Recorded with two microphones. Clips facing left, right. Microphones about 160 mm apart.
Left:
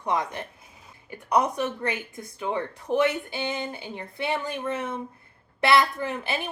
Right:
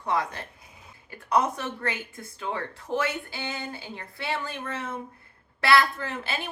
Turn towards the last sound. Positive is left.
turn(degrees=15)  # may be behind; listen again after turning